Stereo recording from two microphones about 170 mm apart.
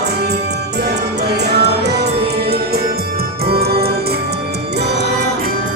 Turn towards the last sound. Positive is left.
turn(degrees=-65)  # may be behind; listen again after turning